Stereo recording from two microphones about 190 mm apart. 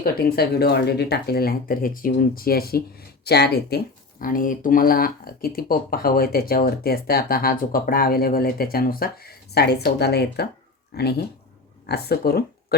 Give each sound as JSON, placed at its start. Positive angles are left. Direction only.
{"t": 0.0, "sound": "speech", "side_deg": 55}
{"t": 4.2, "sound": "speech", "side_deg": 45}